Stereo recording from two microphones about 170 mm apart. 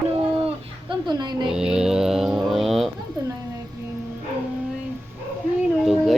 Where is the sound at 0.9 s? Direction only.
25° right (ahead or behind).